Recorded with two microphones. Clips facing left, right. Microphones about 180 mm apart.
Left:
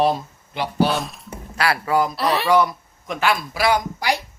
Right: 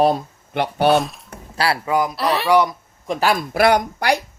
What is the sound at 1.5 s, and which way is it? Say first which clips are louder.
Speech: right 1 dB; 30° right (ahead or behind).